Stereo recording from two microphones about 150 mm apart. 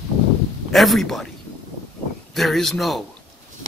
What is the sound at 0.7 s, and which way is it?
Speech, centre (ahead or behind).